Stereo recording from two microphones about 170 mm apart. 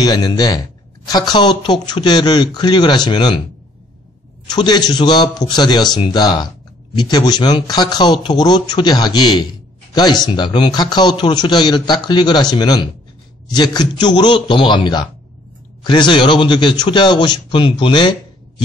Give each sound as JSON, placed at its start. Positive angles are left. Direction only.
{"t": 0.0, "sound": "a man's voice", "side_deg": 25}
{"t": 4.5, "sound": "a man's voice", "side_deg": 25}